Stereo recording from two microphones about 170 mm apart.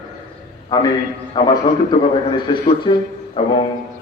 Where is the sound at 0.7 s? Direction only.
20° left (ahead or behind).